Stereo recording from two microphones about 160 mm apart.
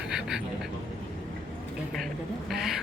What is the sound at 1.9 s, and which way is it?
Speech, centre (ahead or behind).